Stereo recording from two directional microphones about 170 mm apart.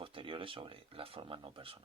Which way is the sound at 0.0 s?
30° right (ahead or behind).